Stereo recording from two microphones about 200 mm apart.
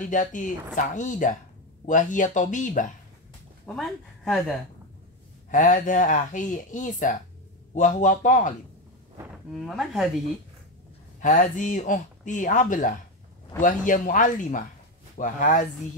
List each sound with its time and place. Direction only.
0.1 s speech: 40° left (ahead or behind)
3.6 s speech: centre (ahead or behind)
5.5 s speech: 40° left (ahead or behind)
9.5 s speech: centre (ahead or behind)
11.1 s speech: 40° left (ahead or behind)